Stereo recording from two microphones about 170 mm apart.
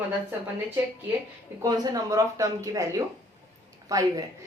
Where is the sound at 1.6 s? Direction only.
25° right (ahead or behind).